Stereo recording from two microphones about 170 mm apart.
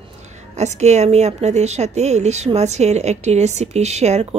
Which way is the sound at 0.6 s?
40° right (ahead or behind).